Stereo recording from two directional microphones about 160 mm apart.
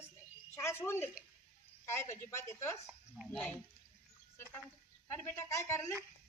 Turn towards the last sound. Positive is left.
turn(degrees=15)  # may be behind; listen again after turning